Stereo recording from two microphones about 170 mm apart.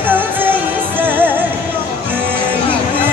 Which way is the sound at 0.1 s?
10° right (ahead or behind).